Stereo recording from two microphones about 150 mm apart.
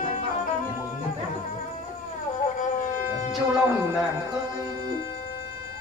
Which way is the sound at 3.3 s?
Centre (ahead or behind).